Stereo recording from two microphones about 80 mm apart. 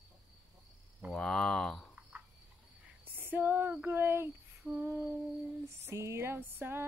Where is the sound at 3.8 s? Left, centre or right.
Right.